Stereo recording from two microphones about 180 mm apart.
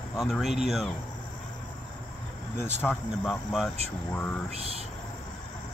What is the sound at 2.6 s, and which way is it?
Speech, 10° left (ahead or behind).